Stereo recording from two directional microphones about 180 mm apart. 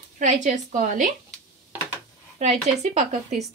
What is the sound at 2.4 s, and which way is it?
Speech, 40° right (ahead or behind).